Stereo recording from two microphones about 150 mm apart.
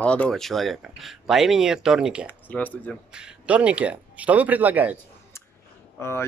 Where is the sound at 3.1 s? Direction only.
5° right (ahead or behind).